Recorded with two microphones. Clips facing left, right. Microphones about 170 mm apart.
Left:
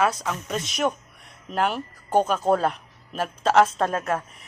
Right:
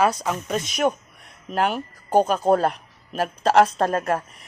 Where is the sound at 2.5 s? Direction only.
40° right (ahead or behind).